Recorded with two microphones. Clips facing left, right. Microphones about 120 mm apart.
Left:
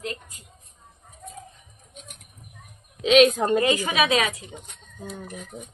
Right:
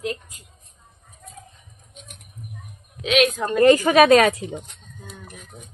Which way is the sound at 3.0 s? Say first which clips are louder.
Left 3 dB; 30° left (ahead or behind).